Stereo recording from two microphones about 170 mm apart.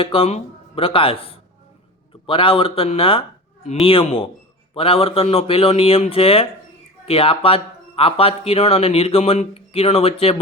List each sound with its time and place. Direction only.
0.0 s speech: 35° left (ahead or behind)